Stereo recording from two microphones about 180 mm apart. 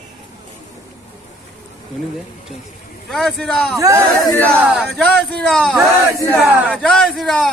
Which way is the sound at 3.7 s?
15° right (ahead or behind).